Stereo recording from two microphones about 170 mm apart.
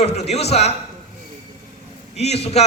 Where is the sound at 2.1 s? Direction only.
40° left (ahead or behind).